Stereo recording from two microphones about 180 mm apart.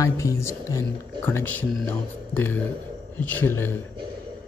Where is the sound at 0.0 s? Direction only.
15° left (ahead or behind).